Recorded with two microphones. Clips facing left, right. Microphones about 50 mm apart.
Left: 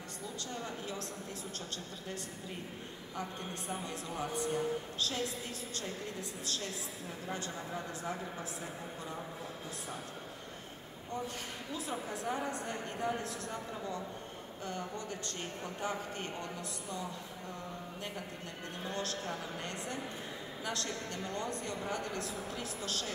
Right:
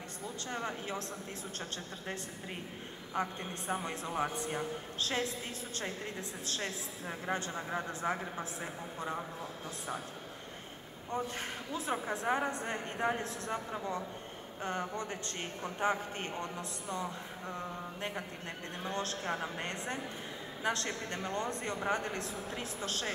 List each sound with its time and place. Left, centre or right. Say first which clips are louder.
0.5 s speech: right 5 dB; right
3.2 s speech: right 5 dB; right
6.4 s speech: right 3 dB; right
11.7 s speech: right 4 dB; right
18.9 s speech: right 3 dB; right